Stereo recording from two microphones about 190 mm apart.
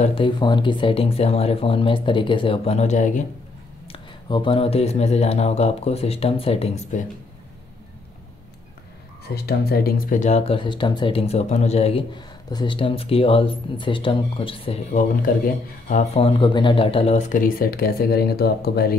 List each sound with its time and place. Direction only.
0.0 s speech: 30° left (ahead or behind)
3.8 s speech: 25° left (ahead or behind)
9.3 s speech: 55° left (ahead or behind); by 12.0 s 35° left (ahead or behind)
12.4 s speech: 25° left (ahead or behind); by 18.9 s 55° left (ahead or behind)